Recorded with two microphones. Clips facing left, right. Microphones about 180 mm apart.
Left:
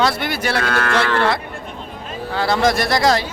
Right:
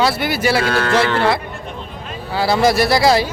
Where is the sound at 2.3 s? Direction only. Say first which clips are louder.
Right 2 dB; 5° right (ahead or behind).